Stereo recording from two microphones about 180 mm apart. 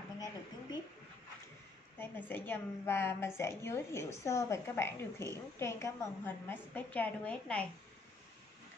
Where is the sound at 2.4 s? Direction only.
10° left (ahead or behind).